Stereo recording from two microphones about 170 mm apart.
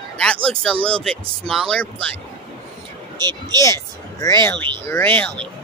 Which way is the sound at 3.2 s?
25° right (ahead or behind).